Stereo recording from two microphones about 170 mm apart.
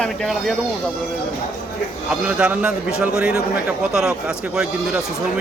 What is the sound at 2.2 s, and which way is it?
A man's voice, 5° right (ahead or behind).